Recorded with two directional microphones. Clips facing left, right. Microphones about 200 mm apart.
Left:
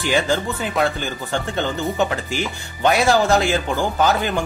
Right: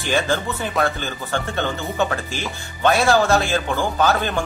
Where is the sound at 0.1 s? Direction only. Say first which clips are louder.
Even; 15° left (ahead or behind).